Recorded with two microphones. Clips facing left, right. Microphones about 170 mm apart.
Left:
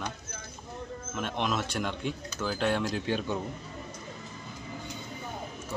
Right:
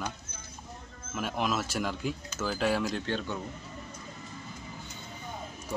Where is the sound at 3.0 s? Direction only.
10° left (ahead or behind).